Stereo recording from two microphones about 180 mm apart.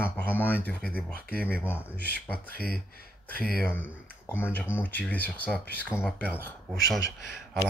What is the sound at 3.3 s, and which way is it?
Speech, 55° left (ahead or behind).